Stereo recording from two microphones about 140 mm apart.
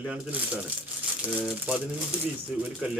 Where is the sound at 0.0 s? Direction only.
10° right (ahead or behind).